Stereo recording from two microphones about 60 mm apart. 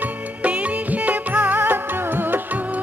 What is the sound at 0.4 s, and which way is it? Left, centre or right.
Music, right.